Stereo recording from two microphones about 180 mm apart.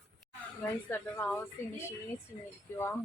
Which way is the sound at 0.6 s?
10° left (ahead or behind).